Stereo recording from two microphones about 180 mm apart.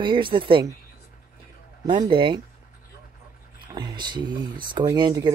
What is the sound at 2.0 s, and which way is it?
Speech, 25° right (ahead or behind).